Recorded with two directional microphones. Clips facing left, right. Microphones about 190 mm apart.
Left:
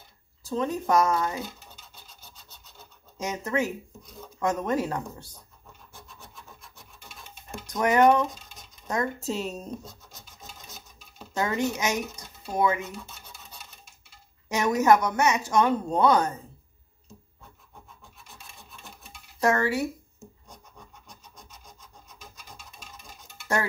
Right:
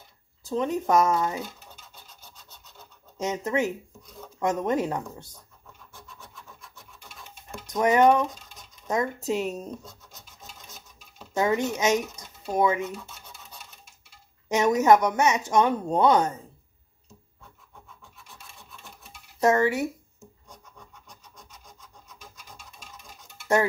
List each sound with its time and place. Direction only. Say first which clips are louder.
0.5 s a woman's voice: right 1 dB; 20° right (ahead or behind)
3.2 s a woman's voice: right 2 dB; 25° right (ahead or behind)
7.6 s a woman's voice: right 1 dB; 20° right (ahead or behind)
11.3 s a woman's voice: right 3 dB; 20° right (ahead or behind)
14.5 s a woman's voice: right 2 dB; 20° right (ahead or behind)
19.4 s a woman's voice: right 2 dB; 20° right (ahead or behind)